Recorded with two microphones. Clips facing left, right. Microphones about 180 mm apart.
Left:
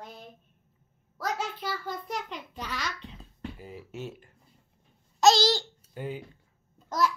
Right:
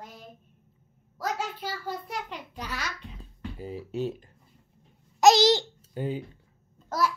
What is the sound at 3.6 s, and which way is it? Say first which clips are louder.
Speech: right 8 dB; 30° right (ahead or behind).